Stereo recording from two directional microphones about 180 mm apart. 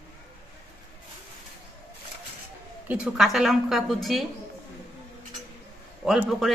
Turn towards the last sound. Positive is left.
turn(degrees=0)  # may be behind; listen again after turning